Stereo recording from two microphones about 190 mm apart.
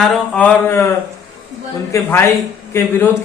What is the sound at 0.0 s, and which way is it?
Speech, 5° left (ahead or behind).